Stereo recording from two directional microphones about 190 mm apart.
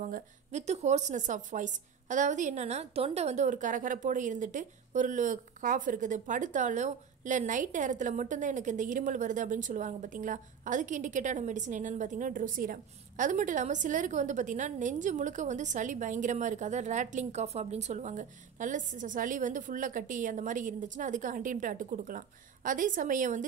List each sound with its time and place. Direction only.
0.0 s a woman's voice: 40° right (ahead or behind)